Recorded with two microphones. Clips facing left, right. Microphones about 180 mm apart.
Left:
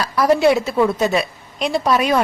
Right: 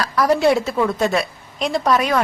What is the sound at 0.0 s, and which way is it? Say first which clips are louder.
A woman's voice: left 2 dB; 5° left (ahead or behind).